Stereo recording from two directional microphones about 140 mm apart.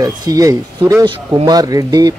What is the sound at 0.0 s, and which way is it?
Speech, 25° right (ahead or behind).